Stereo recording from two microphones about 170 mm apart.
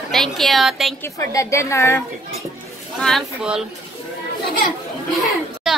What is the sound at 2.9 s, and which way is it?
Speech, 5° left (ahead or behind).